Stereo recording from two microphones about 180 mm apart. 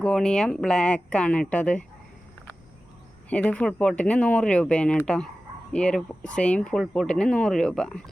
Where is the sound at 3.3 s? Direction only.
5° left (ahead or behind).